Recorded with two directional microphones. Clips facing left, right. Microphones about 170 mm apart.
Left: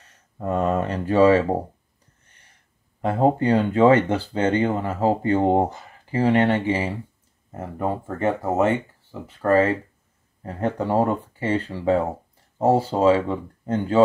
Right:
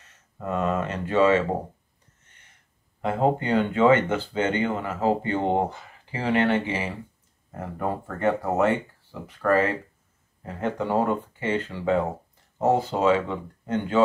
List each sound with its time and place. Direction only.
0.4 s speech: 35° left (ahead or behind)
3.0 s speech: 40° left (ahead or behind)
7.5 s speech: 25° left (ahead or behind)